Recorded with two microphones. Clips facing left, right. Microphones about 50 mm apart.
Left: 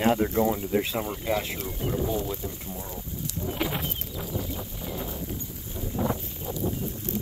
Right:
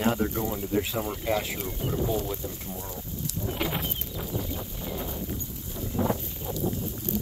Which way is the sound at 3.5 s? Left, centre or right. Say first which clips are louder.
Left 1 dB; centre.